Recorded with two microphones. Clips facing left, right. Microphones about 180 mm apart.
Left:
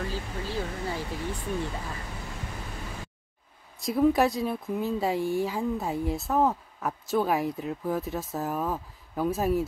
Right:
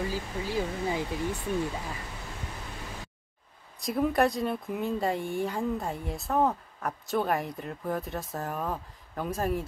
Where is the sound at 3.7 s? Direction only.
Centre (ahead or behind).